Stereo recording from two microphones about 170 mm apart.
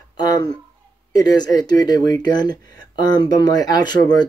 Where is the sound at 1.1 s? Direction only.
25° left (ahead or behind).